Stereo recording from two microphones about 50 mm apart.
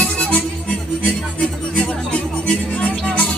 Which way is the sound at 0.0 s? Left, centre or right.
Left.